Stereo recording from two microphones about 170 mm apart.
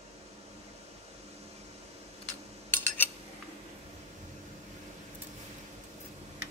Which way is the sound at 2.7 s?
10° left (ahead or behind).